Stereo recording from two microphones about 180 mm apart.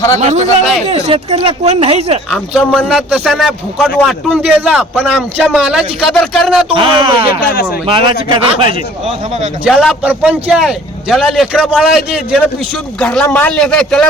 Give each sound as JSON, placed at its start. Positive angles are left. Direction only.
{"t": 0.2, "sound": "speech", "side_deg": -40}
{"t": 2.3, "sound": "a man's voice", "side_deg": 0}
{"t": 6.7, "sound": "speech", "side_deg": -30}
{"t": 7.4, "sound": "speech", "side_deg": 55}
{"t": 7.9, "sound": "speech", "side_deg": -30}
{"t": 9.6, "sound": "a man's voice", "side_deg": 0}